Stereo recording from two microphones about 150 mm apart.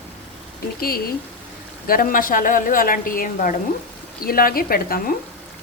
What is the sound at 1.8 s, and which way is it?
A woman's voice, 70° left (ahead or behind).